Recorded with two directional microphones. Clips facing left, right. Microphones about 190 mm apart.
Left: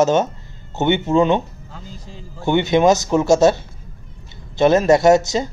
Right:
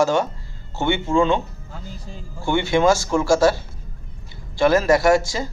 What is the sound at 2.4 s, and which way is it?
A man's voice, 20° left (ahead or behind).